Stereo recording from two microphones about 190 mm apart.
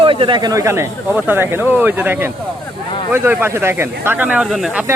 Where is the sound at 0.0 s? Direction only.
25° right (ahead or behind).